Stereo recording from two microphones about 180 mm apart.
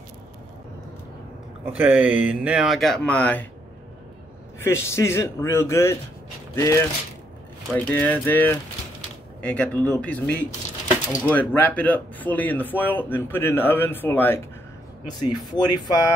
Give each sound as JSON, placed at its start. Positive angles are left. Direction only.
{"t": 1.7, "sound": "speech", "side_deg": -10}
{"t": 4.6, "sound": "speech", "side_deg": 15}
{"t": 15.0, "sound": "speech", "side_deg": 20}